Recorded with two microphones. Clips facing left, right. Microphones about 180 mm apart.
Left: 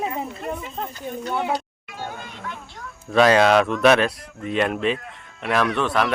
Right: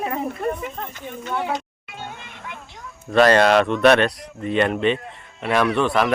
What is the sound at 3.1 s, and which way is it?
Speech, centre (ahead or behind).